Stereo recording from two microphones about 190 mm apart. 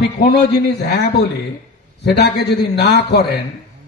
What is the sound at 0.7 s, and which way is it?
A man's voice, 60° left (ahead or behind).